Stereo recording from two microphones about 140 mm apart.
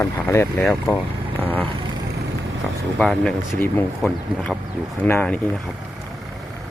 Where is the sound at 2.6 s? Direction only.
Centre (ahead or behind).